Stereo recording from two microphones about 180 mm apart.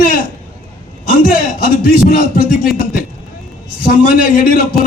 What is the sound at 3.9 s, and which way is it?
Speech, 50° left (ahead or behind).